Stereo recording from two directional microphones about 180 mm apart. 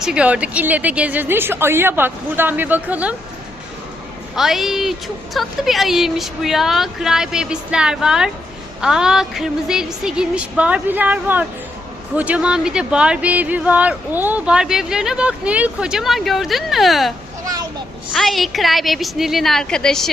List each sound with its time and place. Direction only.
0.0 s a woman's voice: 5° right (ahead or behind)
4.4 s speech: centre (ahead or behind)
17.4 s a sound: 20° right (ahead or behind)
18.1 s speech: centre (ahead or behind)